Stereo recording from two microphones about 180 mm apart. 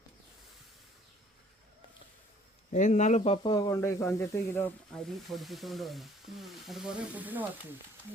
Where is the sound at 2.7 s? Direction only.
40° left (ahead or behind).